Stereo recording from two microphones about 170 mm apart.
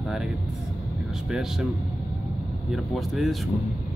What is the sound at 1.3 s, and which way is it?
Speech, 5° right (ahead or behind).